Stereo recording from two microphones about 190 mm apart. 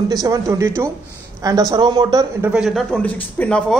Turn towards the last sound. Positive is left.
turn(degrees=5)  # may be behind; listen again after turning